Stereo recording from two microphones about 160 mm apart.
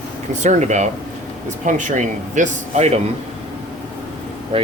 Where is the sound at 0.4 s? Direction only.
45° right (ahead or behind).